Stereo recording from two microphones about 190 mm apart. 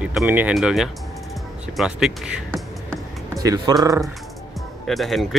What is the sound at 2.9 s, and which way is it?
Music, 20° right (ahead or behind).